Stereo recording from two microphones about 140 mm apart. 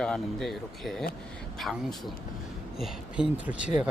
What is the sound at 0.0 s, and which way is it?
Speech, 5° left (ahead or behind).